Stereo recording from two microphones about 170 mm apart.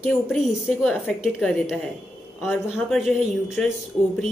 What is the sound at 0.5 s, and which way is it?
A woman's voice, 5° right (ahead or behind).